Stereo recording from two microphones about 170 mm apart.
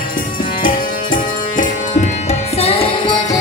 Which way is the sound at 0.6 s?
55° left (ahead or behind).